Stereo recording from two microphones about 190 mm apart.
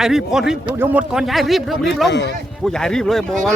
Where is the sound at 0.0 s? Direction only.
Centre (ahead or behind).